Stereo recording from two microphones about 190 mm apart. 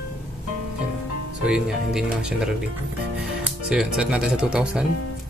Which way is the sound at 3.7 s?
5° right (ahead or behind).